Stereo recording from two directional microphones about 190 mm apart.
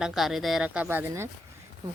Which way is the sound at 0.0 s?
Centre (ahead or behind).